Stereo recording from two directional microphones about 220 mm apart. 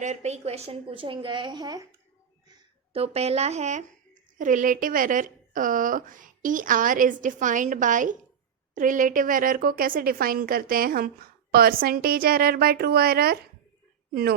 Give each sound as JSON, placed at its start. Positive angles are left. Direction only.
{"t": 0.0, "sound": "a woman's voice", "side_deg": -30}
{"t": 2.9, "sound": "a woman's voice", "side_deg": -30}